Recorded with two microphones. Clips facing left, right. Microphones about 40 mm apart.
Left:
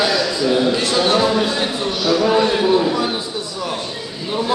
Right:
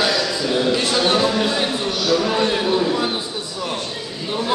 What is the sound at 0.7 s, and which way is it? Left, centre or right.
Speech, centre.